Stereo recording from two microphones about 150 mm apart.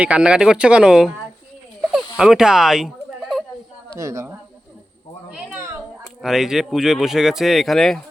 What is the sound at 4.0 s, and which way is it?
Speech, 20° right (ahead or behind).